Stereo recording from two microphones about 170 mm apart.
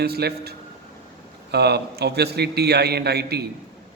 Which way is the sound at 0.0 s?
70° right (ahead or behind).